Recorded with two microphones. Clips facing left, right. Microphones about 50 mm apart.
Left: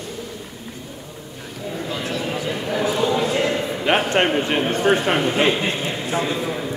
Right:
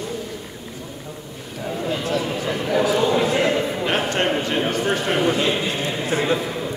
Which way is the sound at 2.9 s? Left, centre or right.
Centre.